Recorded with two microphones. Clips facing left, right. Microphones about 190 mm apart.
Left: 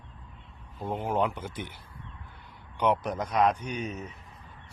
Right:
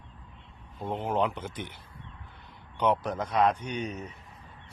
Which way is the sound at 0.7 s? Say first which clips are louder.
Even; 5° left (ahead or behind).